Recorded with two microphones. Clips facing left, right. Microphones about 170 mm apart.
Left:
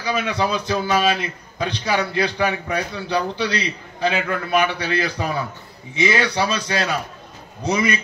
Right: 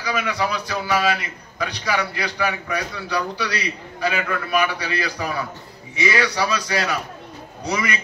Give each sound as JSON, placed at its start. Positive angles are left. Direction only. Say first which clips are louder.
{"t": 0.0, "sound": "a man's voice", "louder": "left 2 dB", "side_deg": 25}